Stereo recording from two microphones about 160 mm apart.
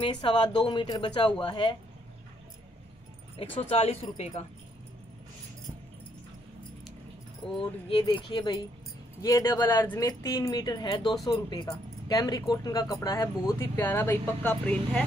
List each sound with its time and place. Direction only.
0.0 s speech: 30° left (ahead or behind)
3.3 s speech: 35° left (ahead or behind)
7.9 s speech: 30° left (ahead or behind); by 15.0 s 10° left (ahead or behind)